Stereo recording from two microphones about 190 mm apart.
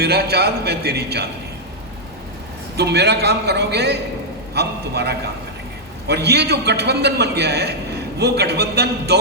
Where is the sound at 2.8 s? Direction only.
60° right (ahead or behind).